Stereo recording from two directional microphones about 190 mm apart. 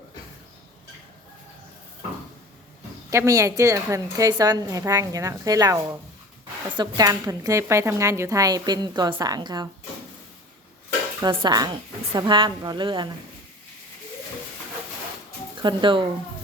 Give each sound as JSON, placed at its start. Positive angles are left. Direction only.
{"t": 3.1, "sound": "a woman's voice", "side_deg": -15}
{"t": 11.2, "sound": "a woman's voice", "side_deg": -20}
{"t": 15.6, "sound": "a woman's voice", "side_deg": -25}